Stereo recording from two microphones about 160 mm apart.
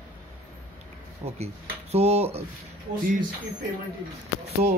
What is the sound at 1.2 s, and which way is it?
Speech, 40° right (ahead or behind).